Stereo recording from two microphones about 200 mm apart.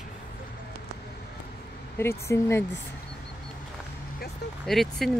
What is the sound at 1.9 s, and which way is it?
Speech, 15° left (ahead or behind).